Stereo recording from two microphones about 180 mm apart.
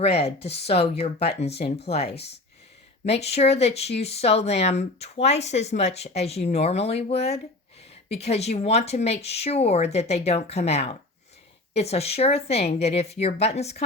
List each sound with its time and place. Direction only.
0.2 s speech: 35° left (ahead or behind)